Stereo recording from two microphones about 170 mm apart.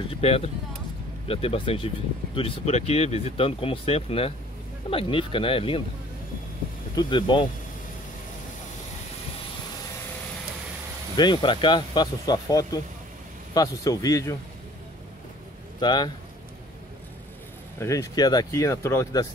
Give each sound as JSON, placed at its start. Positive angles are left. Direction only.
{"t": 0.1, "sound": "speech", "side_deg": 35}
{"t": 7.0, "sound": "speech", "side_deg": 25}
{"t": 11.1, "sound": "speech", "side_deg": 25}
{"t": 15.8, "sound": "speech", "side_deg": 25}
{"t": 17.7, "sound": "speech", "side_deg": 20}